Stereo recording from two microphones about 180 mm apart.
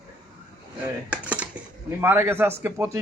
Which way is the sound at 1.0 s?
10° right (ahead or behind).